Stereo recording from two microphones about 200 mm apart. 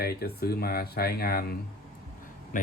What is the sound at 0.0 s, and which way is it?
Speech, 50° left (ahead or behind).